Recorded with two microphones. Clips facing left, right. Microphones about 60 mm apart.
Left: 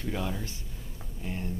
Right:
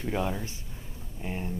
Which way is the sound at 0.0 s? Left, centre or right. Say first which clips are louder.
Right 3 dB; centre.